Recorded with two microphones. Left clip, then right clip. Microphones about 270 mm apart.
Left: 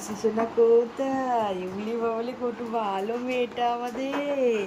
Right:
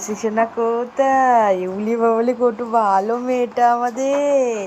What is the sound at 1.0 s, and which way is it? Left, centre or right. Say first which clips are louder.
Speech: right 12 dB; right.